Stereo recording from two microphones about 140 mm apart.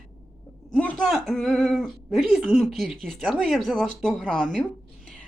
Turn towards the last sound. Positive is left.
turn(degrees=5)  # may be behind; listen again after turning